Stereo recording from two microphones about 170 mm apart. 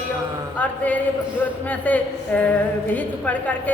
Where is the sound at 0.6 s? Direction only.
10° left (ahead or behind).